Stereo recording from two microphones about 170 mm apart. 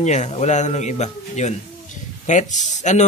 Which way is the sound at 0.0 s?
45° left (ahead or behind).